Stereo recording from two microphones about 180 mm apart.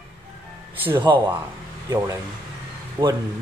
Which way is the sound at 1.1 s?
20° right (ahead or behind).